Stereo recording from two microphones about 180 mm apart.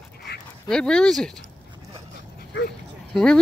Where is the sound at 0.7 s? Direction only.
5° left (ahead or behind).